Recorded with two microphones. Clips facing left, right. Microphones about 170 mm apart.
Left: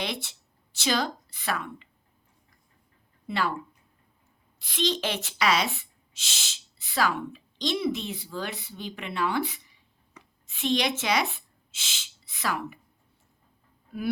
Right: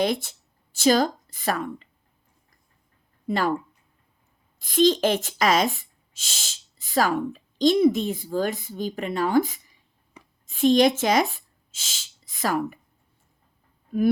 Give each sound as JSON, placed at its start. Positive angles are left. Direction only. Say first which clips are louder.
{"t": 0.0, "sound": "speech", "louder": "right 9 dB", "side_deg": -45}
{"t": 3.2, "sound": "speech", "louder": "right 5 dB", "side_deg": -45}
{"t": 4.6, "sound": "speech", "louder": "right 9 dB", "side_deg": -45}
{"t": 13.9, "sound": "a sound", "louder": "right 11 dB", "side_deg": -45}